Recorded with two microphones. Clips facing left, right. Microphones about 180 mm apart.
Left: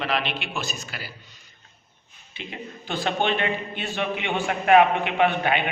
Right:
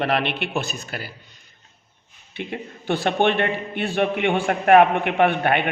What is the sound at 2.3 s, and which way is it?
A man's voice, 60° right (ahead or behind).